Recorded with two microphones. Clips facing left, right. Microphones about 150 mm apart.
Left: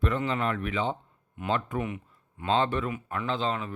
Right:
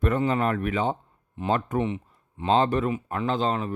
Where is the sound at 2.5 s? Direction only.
40° right (ahead or behind).